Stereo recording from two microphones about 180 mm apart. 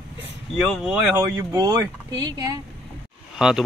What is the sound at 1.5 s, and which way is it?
Speech, 20° right (ahead or behind).